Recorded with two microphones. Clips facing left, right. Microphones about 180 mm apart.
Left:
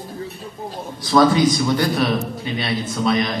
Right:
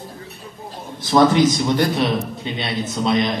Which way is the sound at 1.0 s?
20° right (ahead or behind).